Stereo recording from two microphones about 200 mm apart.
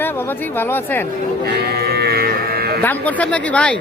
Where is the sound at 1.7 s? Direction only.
50° right (ahead or behind).